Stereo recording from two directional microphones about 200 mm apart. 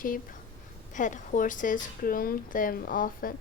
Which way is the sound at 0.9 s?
40° left (ahead or behind).